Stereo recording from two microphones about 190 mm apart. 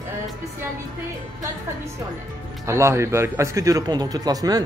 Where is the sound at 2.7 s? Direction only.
15° right (ahead or behind).